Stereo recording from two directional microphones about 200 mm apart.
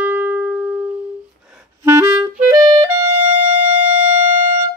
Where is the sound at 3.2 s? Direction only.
35° right (ahead or behind).